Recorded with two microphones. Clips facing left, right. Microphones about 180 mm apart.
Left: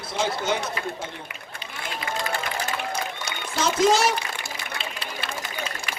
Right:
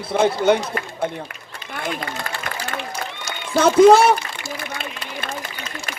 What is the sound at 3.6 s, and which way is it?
Speech, 55° right (ahead or behind).